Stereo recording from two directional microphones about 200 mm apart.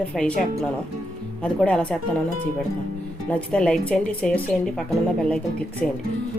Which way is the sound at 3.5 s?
5° left (ahead or behind).